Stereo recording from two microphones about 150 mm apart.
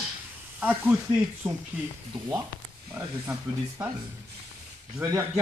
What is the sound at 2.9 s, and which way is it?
Speech, 20° right (ahead or behind).